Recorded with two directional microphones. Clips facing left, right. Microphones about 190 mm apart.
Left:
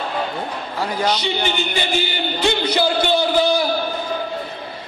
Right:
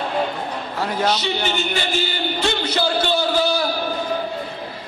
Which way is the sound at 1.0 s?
15° left (ahead or behind).